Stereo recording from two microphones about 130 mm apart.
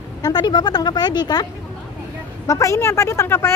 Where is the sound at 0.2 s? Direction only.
35° left (ahead or behind).